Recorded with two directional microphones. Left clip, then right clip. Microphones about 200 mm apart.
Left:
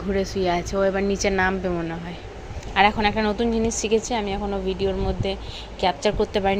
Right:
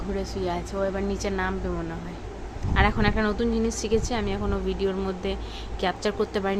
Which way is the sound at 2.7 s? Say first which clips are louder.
Left 5 dB; 10° left (ahead or behind).